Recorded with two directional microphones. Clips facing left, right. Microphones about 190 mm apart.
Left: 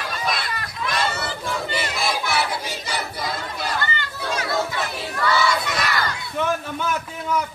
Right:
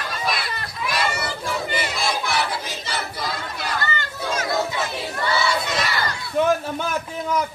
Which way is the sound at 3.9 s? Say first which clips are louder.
Right 1 dB; 45° right (ahead or behind).